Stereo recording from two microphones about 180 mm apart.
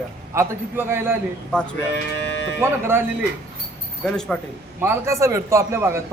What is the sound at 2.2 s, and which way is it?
Music, 75° left (ahead or behind).